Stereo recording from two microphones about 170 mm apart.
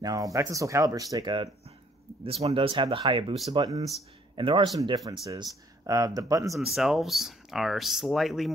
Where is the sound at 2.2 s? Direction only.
35° right (ahead or behind); by 6.5 s 20° right (ahead or behind).